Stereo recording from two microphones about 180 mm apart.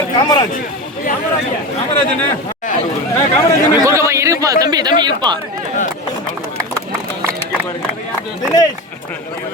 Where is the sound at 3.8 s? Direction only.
15° right (ahead or behind).